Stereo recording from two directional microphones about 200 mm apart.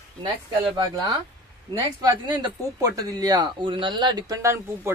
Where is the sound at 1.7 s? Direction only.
20° right (ahead or behind).